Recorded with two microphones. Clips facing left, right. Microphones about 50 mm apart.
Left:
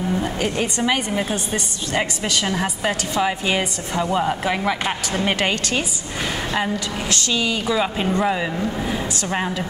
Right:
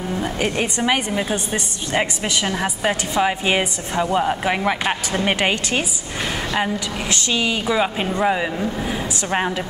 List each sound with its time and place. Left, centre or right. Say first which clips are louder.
0.6 s a woman's voice: right 1 dB; right
1.3 s a woman's voice: right 1 dB; right
2.0 s a woman's voice: right 1 dB; centre